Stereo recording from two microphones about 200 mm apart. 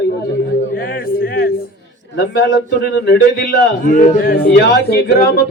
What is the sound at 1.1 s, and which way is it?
Speech, 50° left (ahead or behind).